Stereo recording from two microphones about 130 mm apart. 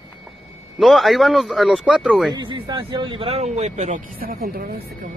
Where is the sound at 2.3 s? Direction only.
35° right (ahead or behind); by 4.5 s 90° right.